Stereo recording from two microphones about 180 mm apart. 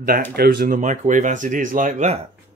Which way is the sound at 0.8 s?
40° right (ahead or behind).